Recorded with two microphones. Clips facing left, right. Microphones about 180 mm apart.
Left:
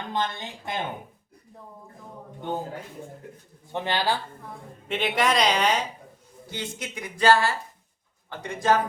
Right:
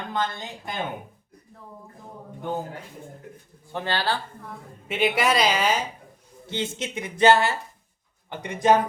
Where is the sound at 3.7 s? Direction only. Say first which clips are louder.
Left 1 dB; 20° left (ahead or behind).